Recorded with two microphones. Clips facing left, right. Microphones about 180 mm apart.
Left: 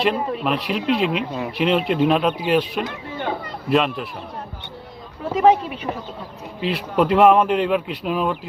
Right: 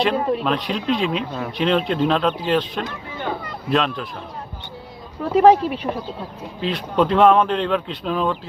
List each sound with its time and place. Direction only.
0.0 s speech: 5° left (ahead or behind)
5.4 s speech: 35° right (ahead or behind)
6.6 s speech: 5° left (ahead or behind)